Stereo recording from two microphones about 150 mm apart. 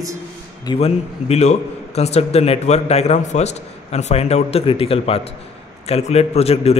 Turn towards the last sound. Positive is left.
turn(degrees=45)  # may be behind; listen again after turning